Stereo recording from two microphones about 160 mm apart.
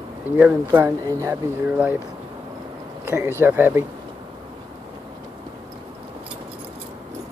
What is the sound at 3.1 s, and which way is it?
Speech, 15° right (ahead or behind).